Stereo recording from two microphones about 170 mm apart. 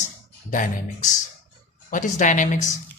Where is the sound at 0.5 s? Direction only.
50° left (ahead or behind).